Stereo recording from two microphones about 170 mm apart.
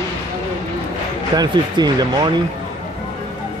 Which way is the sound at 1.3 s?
25° right (ahead or behind).